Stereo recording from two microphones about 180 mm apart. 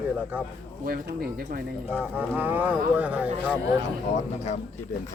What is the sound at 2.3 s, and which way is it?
Speech, 10° right (ahead or behind).